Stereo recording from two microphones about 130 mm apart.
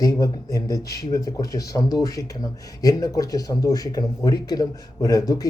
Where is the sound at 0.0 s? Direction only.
25° left (ahead or behind).